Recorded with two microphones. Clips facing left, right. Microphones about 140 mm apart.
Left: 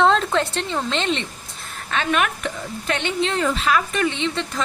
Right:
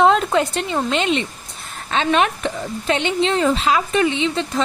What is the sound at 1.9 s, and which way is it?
A woman's voice, 25° right (ahead or behind).